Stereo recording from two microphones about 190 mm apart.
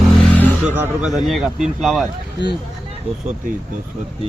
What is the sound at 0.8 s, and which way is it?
Speech, centre (ahead or behind).